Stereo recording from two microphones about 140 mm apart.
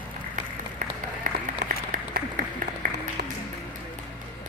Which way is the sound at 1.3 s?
70° right (ahead or behind).